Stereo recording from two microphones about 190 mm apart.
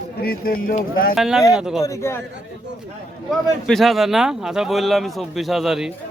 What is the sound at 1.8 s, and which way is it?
Speech, 15° left (ahead or behind).